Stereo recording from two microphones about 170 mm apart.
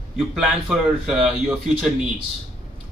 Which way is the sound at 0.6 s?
Centre (ahead or behind).